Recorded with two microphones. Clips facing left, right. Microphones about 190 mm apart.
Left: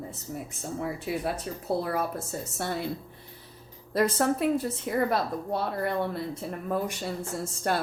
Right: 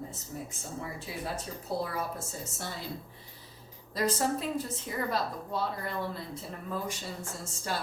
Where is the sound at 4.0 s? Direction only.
60° left (ahead or behind).